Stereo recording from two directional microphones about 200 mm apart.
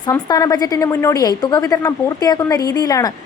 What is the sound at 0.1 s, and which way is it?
A woman's voice, 20° left (ahead or behind).